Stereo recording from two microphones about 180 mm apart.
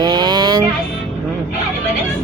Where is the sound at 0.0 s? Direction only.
25° right (ahead or behind).